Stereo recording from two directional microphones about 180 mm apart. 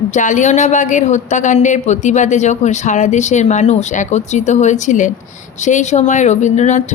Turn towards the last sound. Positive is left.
turn(degrees=40)  # may be behind; listen again after turning